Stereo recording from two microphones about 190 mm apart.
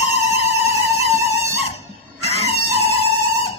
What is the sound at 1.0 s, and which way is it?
Music, 35° left (ahead or behind).